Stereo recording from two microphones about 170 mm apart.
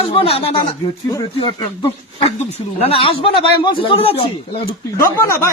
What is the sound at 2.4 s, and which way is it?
A man's voice, 35° left (ahead or behind).